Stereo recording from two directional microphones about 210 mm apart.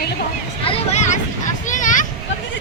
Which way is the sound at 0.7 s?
35° left (ahead or behind).